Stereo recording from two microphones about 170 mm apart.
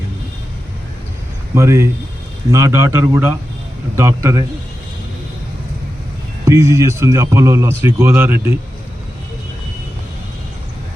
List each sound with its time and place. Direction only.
1.5 s speech: 15° right (ahead or behind)
6.4 s speech: 15° right (ahead or behind)